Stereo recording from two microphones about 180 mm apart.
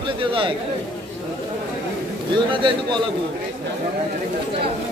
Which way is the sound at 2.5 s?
25° right (ahead or behind).